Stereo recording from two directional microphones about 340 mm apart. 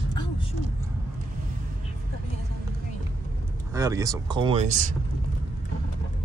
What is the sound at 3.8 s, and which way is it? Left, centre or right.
Speech, centre.